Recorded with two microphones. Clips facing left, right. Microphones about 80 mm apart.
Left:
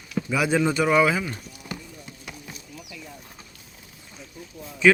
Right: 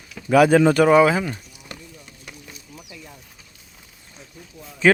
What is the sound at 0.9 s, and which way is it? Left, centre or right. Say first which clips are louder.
Speech: right 5 dB; right.